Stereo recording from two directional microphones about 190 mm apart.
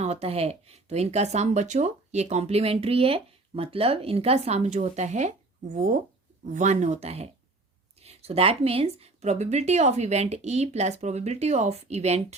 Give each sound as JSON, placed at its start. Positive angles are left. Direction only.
{"t": 0.0, "sound": "speech", "side_deg": -35}